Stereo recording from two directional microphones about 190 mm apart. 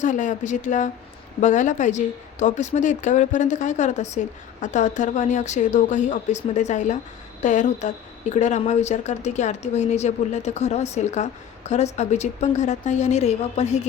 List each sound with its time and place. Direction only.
0.0 s a woman's voice: 40° left (ahead or behind)